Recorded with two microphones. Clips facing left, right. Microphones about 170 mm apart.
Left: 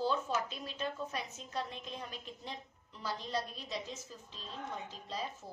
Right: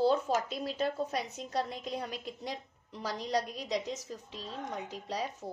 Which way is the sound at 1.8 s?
80° right.